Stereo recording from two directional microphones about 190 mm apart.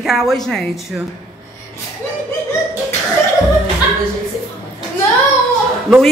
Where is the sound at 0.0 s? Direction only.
Centre (ahead or behind).